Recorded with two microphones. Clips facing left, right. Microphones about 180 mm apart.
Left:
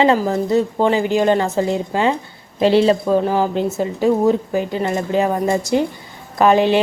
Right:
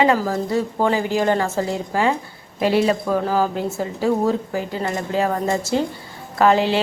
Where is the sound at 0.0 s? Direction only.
25° left (ahead or behind).